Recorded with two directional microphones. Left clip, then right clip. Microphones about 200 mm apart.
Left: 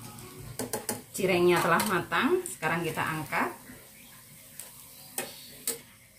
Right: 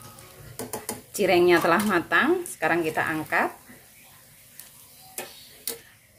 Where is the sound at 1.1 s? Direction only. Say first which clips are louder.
Right 5 dB; 50° right (ahead or behind).